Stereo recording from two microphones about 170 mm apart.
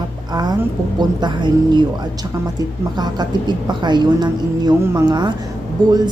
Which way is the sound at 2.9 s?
25° right (ahead or behind).